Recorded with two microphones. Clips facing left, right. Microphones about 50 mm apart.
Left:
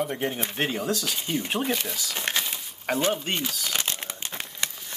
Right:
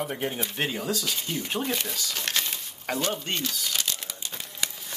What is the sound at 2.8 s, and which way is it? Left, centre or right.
Speech, centre.